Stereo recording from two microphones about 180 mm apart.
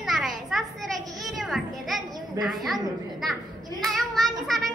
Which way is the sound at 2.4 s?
Centre (ahead or behind).